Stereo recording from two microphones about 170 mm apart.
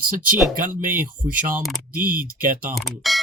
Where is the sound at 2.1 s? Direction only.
55° right (ahead or behind).